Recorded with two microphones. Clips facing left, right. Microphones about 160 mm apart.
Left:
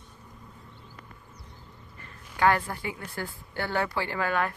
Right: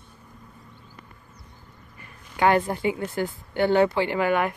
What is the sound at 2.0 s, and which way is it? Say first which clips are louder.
Speech: right 2 dB; 20° right (ahead or behind).